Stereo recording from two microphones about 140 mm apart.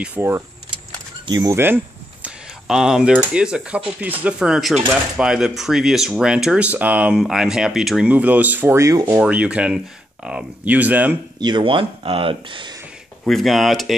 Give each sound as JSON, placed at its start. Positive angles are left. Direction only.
{"t": 0.0, "sound": "speech", "side_deg": -15}
{"t": 1.2, "sound": "speech", "side_deg": -30}
{"t": 2.2, "sound": "speech", "side_deg": -5}
{"t": 11.3, "sound": "speech", "side_deg": -30}
{"t": 13.2, "sound": "speech", "side_deg": 0}